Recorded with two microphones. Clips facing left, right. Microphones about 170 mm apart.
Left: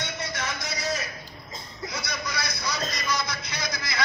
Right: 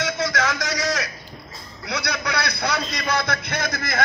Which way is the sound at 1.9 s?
70° right (ahead or behind).